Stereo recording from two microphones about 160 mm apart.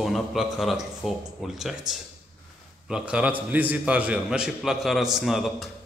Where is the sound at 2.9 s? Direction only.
5° right (ahead or behind).